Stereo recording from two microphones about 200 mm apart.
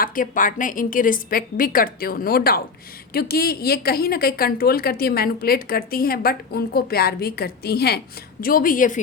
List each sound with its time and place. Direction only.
0.0 s speech: 45° left (ahead or behind)